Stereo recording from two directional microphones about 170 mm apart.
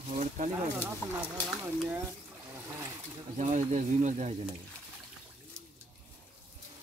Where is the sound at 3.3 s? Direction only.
45° right (ahead or behind).